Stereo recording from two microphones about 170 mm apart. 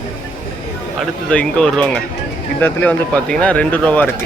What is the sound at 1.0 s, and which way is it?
Speech, 5° left (ahead or behind).